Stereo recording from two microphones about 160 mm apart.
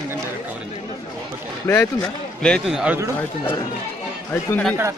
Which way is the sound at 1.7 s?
20° left (ahead or behind).